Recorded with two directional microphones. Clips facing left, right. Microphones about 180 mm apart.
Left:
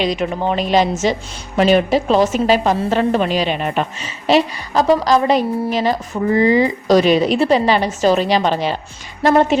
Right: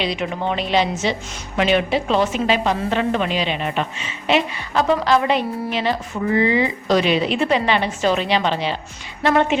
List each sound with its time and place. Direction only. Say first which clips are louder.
0.0 s a woman's voice: left 4 dB; 45° left (ahead or behind)